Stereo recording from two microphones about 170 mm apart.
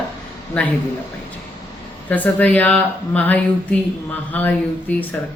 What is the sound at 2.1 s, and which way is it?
Speech, 10° left (ahead or behind).